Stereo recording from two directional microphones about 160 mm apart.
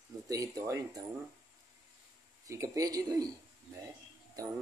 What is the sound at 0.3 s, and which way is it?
Speech, 20° right (ahead or behind).